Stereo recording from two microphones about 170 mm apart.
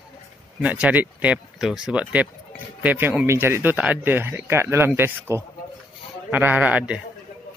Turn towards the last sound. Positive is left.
turn(degrees=-10)  # may be behind; listen again after turning